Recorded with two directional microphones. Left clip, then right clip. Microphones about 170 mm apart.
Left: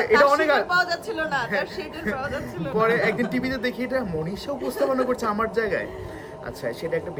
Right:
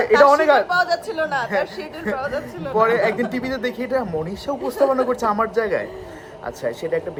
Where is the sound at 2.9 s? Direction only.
15° right (ahead or behind).